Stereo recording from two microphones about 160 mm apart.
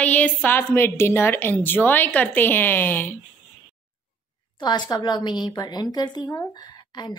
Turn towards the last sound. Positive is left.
turn(degrees=25)  # may be behind; listen again after turning